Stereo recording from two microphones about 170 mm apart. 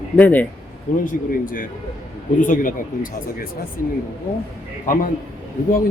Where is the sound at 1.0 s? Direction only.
55° left (ahead or behind).